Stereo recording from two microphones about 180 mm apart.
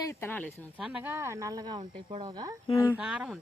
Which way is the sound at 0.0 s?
15° left (ahead or behind).